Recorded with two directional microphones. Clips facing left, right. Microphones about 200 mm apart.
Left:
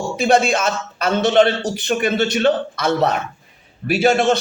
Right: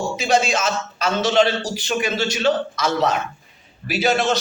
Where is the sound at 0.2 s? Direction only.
55° left (ahead or behind).